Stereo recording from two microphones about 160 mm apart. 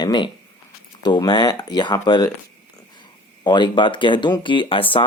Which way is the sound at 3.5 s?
30° left (ahead or behind).